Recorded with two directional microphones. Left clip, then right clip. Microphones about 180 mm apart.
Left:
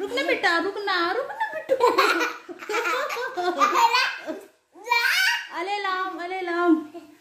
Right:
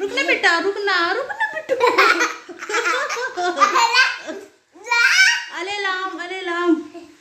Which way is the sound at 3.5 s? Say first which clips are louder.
Right 4 dB; centre (ahead or behind).